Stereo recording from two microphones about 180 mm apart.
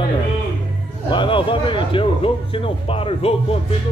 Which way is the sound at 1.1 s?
30° left (ahead or behind).